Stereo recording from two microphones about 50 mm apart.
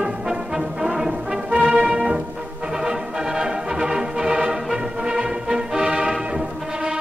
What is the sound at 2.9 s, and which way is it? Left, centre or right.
Music, centre.